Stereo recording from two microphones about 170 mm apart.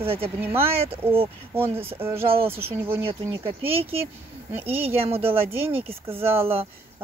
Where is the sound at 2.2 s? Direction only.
35° right (ahead or behind).